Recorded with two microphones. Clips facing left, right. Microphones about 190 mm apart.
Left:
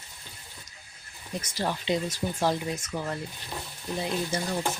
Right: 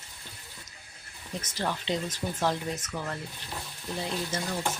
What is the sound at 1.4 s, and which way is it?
Speech, 10° left (ahead or behind).